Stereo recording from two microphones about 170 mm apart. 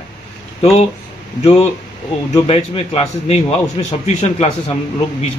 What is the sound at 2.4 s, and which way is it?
Speech, 35° left (ahead or behind).